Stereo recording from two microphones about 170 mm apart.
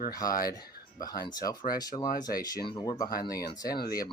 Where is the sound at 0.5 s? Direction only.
20° left (ahead or behind).